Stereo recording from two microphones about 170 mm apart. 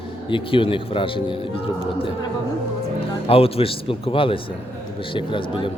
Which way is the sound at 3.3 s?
35° left (ahead or behind).